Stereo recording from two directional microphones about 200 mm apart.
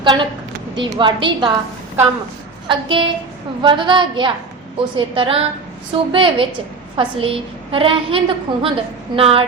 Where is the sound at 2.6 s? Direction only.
25° right (ahead or behind).